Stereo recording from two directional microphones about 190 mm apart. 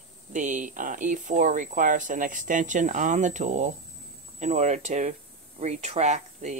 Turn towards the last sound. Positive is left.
turn(degrees=-35)  # may be behind; listen again after turning